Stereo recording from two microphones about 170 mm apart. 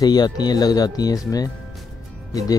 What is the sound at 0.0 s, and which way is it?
Speech, 25° left (ahead or behind).